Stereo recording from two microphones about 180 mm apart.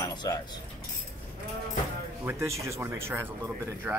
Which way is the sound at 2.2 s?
15° right (ahead or behind).